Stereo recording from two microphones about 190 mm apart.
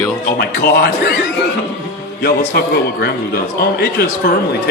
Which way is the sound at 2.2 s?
60° left (ahead or behind).